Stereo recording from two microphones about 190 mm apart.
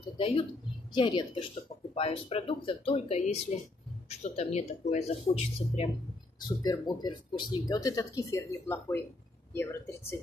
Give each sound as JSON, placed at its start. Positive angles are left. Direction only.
{"t": 0.2, "sound": "speech", "side_deg": 30}
{"t": 6.4, "sound": "speech", "side_deg": 20}